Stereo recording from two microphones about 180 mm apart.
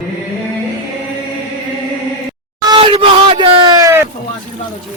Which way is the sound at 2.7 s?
30° right (ahead or behind).